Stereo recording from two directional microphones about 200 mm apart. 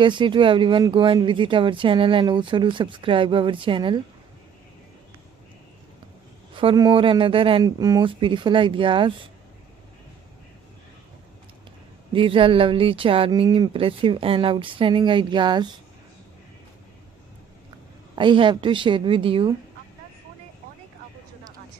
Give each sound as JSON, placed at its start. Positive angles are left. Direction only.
{"t": 0.0, "sound": "speech", "side_deg": -25}
{"t": 6.5, "sound": "speech", "side_deg": -25}
{"t": 12.1, "sound": "speech", "side_deg": -25}
{"t": 18.1, "sound": "speech", "side_deg": -25}